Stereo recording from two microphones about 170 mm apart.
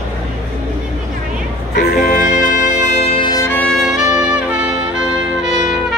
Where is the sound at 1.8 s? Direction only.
50° left (ahead or behind).